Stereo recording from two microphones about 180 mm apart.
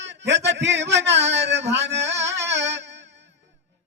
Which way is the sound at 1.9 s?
75° right (ahead or behind).